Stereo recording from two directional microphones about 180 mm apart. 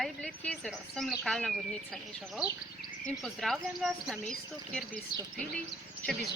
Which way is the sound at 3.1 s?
Centre (ahead or behind).